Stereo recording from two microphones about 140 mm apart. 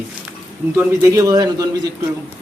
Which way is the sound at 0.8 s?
20° right (ahead or behind).